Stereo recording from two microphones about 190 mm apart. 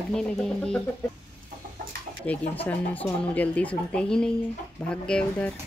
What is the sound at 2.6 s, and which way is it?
Speech, 10° left (ahead or behind).